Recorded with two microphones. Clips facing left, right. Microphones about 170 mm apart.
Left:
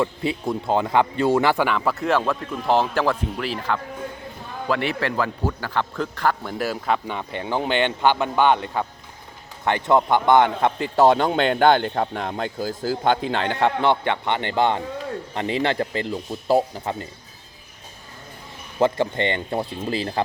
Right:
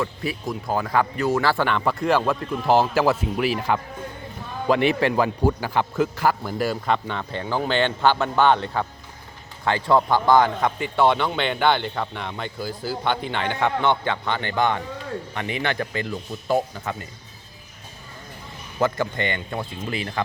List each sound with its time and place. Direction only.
0.0 s speech: 25° left (ahead or behind)
1.6 s a man's voice: centre (ahead or behind); by 10.7 s 25° left (ahead or behind)
10.9 s speech: 40° left (ahead or behind)
13.5 s speech: 30° left (ahead or behind)
18.8 s speech: 25° left (ahead or behind)